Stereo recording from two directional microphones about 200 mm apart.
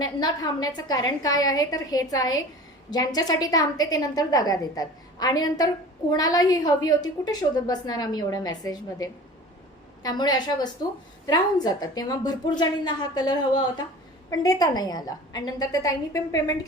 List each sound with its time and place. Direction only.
0.0 s a woman's voice: 20° left (ahead or behind)